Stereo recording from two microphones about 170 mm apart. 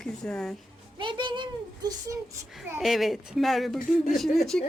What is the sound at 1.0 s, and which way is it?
Speech, 30° right (ahead or behind).